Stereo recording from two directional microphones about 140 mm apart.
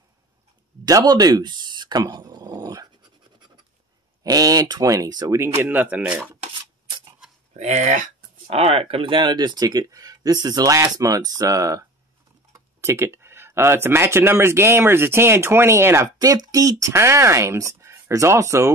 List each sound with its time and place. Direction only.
0.8 s a sound: 25° right (ahead or behind)
4.2 s speech: 25° right (ahead or behind)
5.4 s speech: 15° right (ahead or behind)
7.5 s speech: 55° right (ahead or behind); by 18.7 s 20° right (ahead or behind)